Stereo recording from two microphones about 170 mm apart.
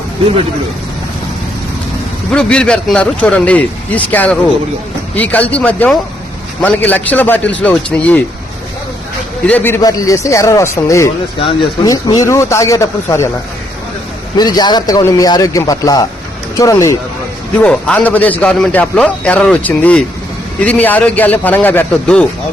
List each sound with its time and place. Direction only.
2.3 s a man's voice: 5° left (ahead or behind)
9.5 s a man's voice: 10° left (ahead or behind)
11.3 s a man's voice: 30° left (ahead or behind)
14.3 s a man's voice: 25° left (ahead or behind)
17.6 s a man's voice: 5° left (ahead or behind)